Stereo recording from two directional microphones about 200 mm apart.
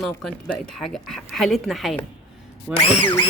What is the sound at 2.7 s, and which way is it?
Speech, 30° left (ahead or behind).